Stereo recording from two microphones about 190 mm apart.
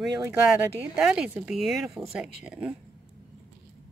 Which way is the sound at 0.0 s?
5° right (ahead or behind).